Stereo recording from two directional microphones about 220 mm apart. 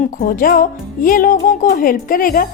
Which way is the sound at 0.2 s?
40° left (ahead or behind).